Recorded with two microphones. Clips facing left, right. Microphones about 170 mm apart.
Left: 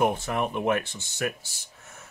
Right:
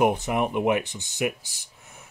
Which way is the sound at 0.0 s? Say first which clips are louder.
Right 3 dB; 15° right (ahead or behind).